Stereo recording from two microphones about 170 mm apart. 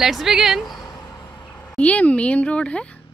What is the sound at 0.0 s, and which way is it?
Speech, centre (ahead or behind).